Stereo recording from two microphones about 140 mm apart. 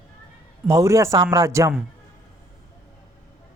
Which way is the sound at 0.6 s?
20° right (ahead or behind).